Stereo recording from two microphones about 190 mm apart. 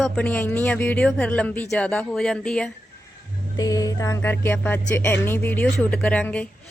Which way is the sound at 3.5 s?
20° left (ahead or behind).